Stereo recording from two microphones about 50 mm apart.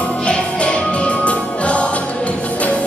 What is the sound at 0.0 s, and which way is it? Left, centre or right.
Music, left.